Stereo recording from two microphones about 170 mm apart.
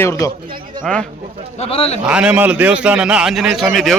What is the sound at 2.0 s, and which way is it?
A man's voice, 5° right (ahead or behind).